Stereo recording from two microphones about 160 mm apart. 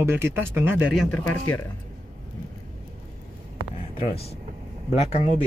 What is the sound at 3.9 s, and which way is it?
Speech, 35° left (ahead or behind).